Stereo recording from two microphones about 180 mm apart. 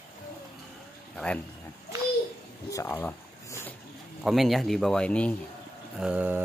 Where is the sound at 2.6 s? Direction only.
15° left (ahead or behind).